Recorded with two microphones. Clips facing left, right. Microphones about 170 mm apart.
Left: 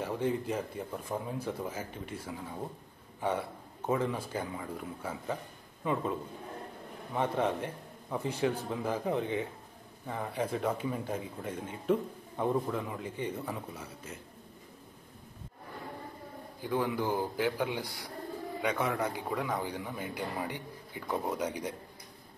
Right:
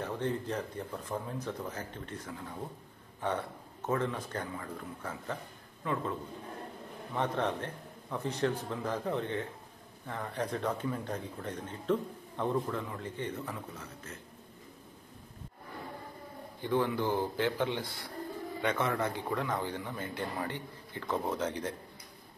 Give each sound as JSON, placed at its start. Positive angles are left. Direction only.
{"t": 0.0, "sound": "speech", "side_deg": 10}
{"t": 7.2, "sound": "speech", "side_deg": 10}
{"t": 16.6, "sound": "speech", "side_deg": 10}